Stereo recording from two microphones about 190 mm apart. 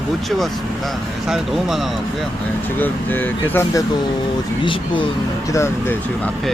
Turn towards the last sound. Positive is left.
turn(degrees=15)  # may be behind; listen again after turning